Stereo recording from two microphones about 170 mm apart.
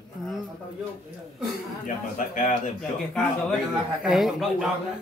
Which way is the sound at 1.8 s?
50° left (ahead or behind).